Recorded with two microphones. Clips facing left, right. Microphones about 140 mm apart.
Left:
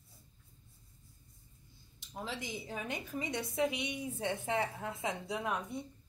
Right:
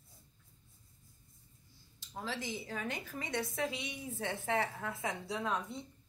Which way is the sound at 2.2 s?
20° left (ahead or behind).